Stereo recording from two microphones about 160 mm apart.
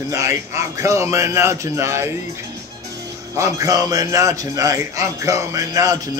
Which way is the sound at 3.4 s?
20° right (ahead or behind).